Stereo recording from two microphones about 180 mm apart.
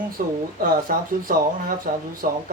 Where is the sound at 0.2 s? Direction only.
50° right (ahead or behind).